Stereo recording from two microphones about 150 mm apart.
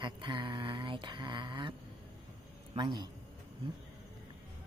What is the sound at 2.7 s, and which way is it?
Speech, 30° right (ahead or behind).